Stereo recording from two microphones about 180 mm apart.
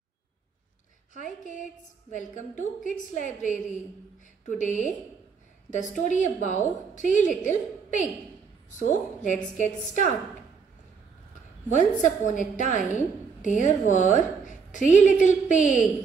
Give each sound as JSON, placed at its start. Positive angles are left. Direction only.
{"t": 1.1, "sound": "a woman's voice", "side_deg": 45}
{"t": 11.7, "sound": "a woman's voice", "side_deg": 45}